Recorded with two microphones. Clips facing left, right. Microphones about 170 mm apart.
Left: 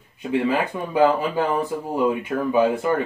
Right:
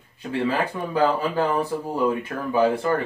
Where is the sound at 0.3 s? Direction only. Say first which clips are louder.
Left 2 dB; 15° left (ahead or behind).